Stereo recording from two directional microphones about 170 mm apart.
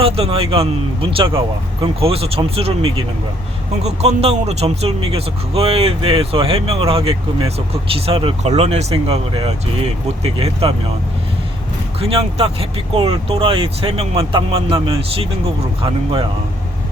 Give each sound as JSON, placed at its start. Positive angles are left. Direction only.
{"t": 0.0, "sound": "speech", "side_deg": -35}
{"t": 11.9, "sound": "speech", "side_deg": -35}